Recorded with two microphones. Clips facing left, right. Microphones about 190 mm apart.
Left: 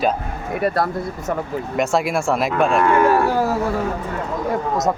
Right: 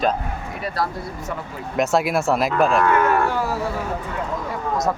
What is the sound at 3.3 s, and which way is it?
Speech, 40° left (ahead or behind).